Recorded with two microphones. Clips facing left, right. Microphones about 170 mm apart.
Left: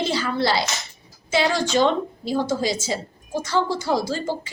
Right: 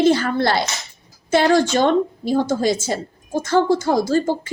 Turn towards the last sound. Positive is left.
turn(degrees=-50)  # may be behind; listen again after turning